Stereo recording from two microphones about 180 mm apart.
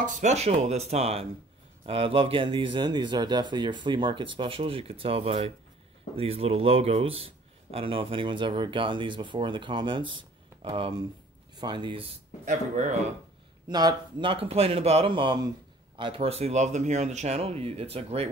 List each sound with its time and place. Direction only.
0.0 s a man's voice: 40° right (ahead or behind)
12.4 s speech: 40° right (ahead or behind)
13.7 s a man's voice: 25° right (ahead or behind)